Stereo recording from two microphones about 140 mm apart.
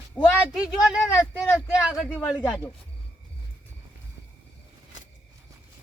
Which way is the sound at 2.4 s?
10° left (ahead or behind).